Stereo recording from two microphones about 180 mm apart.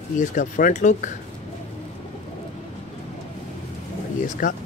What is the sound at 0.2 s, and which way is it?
Speech, 45° left (ahead or behind).